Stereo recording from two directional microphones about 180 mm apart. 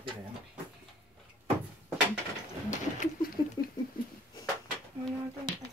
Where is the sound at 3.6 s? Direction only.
20° left (ahead or behind).